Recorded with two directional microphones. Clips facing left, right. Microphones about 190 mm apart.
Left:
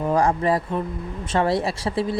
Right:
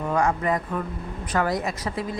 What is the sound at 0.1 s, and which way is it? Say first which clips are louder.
A woman's voice: left 3 dB; 30° left (ahead or behind).